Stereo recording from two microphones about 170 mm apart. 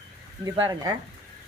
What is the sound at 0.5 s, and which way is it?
Speech, 25° right (ahead or behind).